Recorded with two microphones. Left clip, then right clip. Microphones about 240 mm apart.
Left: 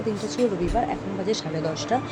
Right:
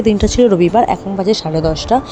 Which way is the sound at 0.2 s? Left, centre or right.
Right.